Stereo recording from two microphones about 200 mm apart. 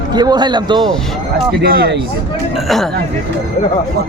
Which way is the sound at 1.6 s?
55° right (ahead or behind).